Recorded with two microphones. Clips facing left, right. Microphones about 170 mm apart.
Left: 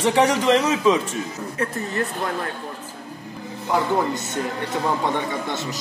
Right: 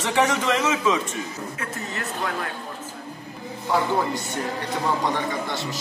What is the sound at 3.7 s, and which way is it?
Speech, 20° left (ahead or behind).